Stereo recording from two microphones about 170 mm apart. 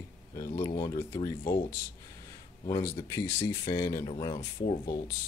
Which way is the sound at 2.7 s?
20° left (ahead or behind).